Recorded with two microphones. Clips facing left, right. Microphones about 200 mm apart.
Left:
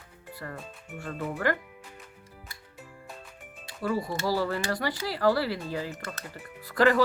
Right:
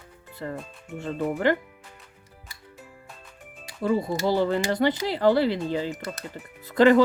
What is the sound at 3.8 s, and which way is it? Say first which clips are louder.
Speech: right 5 dB; 20° right (ahead or behind).